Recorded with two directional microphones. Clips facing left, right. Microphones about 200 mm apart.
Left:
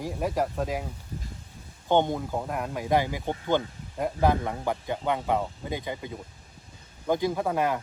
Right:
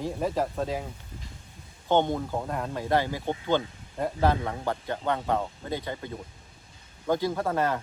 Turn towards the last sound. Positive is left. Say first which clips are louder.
# left 1 dB
turn(degrees=15)  # may be behind; listen again after turning